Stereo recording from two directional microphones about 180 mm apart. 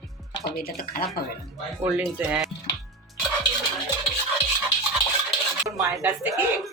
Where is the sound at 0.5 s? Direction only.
55° left (ahead or behind).